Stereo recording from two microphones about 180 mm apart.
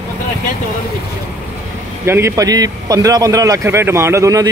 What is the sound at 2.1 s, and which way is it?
A man's voice, 15° right (ahead or behind).